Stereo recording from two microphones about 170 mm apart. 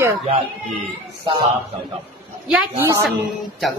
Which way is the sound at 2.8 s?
15° right (ahead or behind).